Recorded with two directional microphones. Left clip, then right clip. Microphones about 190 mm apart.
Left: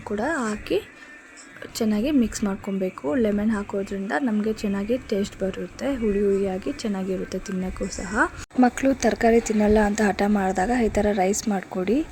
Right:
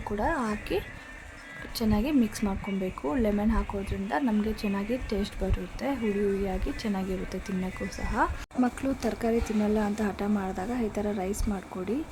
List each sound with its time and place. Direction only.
0.2 s speech: 15° left (ahead or behind)